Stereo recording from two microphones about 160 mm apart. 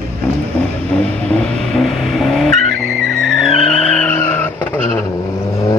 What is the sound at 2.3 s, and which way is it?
Vehicle, centre (ahead or behind).